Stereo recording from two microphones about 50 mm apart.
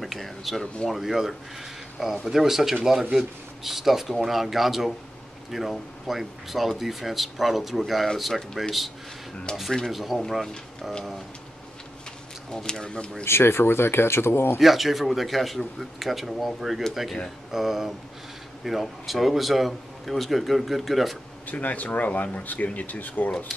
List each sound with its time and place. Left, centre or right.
0.0 s speech: centre
12.4 s speech: centre
13.2 s speech: left
14.6 s speech: centre
21.5 s speech: left